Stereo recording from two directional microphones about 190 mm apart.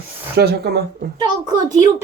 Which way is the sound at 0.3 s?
55° right (ahead or behind).